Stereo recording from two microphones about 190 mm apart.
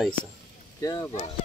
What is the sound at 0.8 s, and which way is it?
Speech, 15° left (ahead or behind).